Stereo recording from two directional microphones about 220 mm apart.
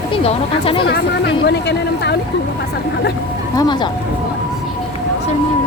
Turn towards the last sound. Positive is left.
turn(degrees=20)  # may be behind; listen again after turning